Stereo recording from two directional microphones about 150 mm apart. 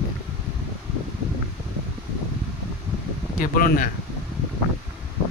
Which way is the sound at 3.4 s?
65° left (ahead or behind).